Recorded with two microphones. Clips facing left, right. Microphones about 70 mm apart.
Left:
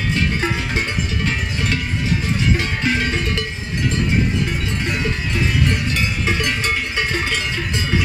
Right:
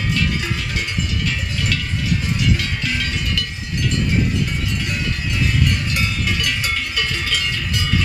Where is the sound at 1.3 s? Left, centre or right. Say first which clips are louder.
Left 2 dB; left.